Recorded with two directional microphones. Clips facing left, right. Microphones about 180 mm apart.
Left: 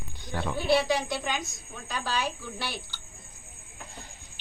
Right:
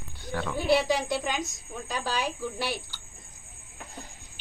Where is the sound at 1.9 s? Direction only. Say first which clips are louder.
Even; 40° right (ahead or behind).